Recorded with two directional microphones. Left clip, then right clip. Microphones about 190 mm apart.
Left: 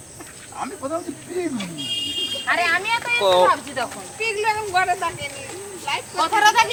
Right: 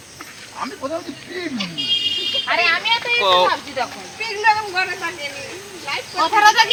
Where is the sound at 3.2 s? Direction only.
30° left (ahead or behind).